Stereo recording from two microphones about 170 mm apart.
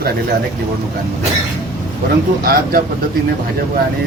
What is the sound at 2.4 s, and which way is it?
Speech, 60° right (ahead or behind).